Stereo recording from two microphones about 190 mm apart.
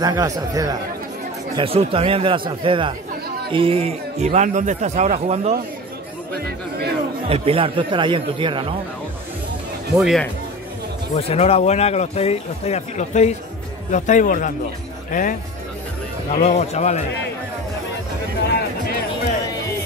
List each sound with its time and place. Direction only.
0.0 s speech: 20° right (ahead or behind)
1.6 s speech: 30° right (ahead or behind)
6.3 s speech: 55° right (ahead or behind)
7.2 s speech: 30° right (ahead or behind)
9.9 s speech: centre (ahead or behind)
11.1 s a man's voice: 30° left (ahead or behind)
16.3 s speech: 35° left (ahead or behind)